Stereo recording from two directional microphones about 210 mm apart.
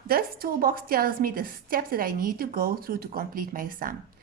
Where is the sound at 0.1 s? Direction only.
45° right (ahead or behind).